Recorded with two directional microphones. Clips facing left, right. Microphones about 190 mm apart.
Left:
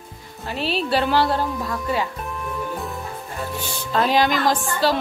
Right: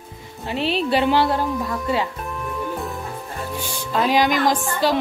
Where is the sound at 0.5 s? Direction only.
20° right (ahead or behind).